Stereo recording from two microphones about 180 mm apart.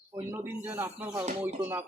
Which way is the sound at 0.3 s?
10° right (ahead or behind).